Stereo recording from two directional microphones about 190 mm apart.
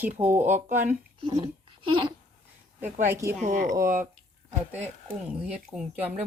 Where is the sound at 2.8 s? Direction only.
15° right (ahead or behind).